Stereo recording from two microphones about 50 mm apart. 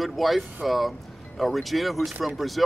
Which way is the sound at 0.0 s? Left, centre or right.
Centre.